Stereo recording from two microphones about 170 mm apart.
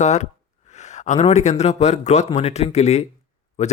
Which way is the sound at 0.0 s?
45° left (ahead or behind).